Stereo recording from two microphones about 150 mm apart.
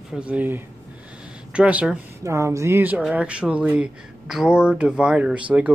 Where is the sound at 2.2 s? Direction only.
20° right (ahead or behind).